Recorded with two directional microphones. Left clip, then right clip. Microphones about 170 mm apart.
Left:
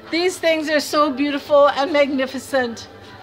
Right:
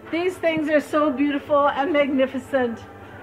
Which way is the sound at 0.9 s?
40° left (ahead or behind).